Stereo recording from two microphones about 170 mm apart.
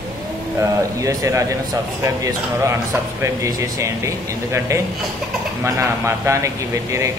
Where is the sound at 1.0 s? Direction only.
20° right (ahead or behind).